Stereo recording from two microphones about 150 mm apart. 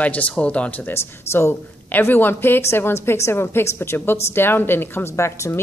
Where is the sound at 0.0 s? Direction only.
10° left (ahead or behind).